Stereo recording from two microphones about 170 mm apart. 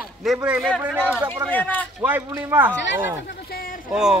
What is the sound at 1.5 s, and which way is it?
Speech, 10° left (ahead or behind).